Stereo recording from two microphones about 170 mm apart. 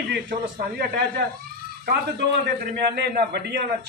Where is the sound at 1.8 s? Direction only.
75° right (ahead or behind).